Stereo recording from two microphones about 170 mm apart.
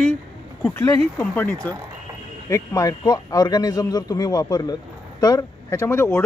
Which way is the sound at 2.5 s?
20° left (ahead or behind).